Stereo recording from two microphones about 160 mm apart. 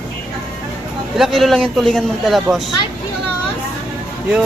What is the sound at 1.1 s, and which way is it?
Speech, centre (ahead or behind).